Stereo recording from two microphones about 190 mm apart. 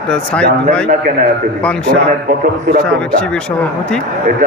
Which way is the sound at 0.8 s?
45° right (ahead or behind).